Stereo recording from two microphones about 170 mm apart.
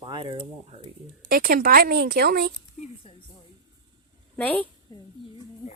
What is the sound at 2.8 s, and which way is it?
Speech, 45° left (ahead or behind).